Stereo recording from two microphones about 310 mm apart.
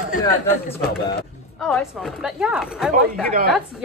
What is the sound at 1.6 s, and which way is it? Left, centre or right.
Speech, centre.